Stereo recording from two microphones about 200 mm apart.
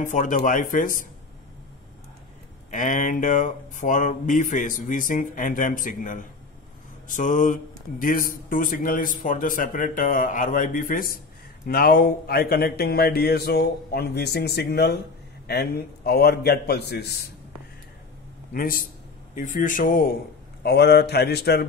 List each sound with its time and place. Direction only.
0.0 s speech: 40° left (ahead or behind)
2.7 s a man's voice: 40° left (ahead or behind)
18.5 s a man's voice: 45° left (ahead or behind)